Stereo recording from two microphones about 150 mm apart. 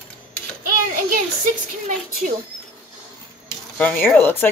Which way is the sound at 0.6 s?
70° right (ahead or behind).